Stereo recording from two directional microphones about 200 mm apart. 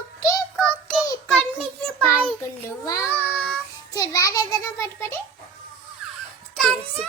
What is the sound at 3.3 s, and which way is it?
Child singing, 5° left (ahead or behind).